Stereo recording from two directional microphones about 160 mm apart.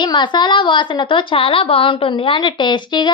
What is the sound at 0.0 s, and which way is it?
A woman's voice, 30° left (ahead or behind).